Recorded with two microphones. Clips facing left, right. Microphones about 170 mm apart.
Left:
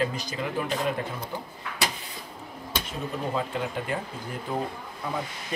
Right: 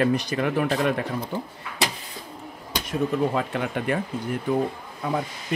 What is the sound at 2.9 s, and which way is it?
Speech, 70° right (ahead or behind).